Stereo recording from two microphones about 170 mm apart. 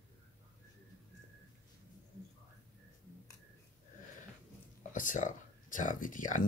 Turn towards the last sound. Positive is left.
turn(degrees=50)  # may be behind; listen again after turning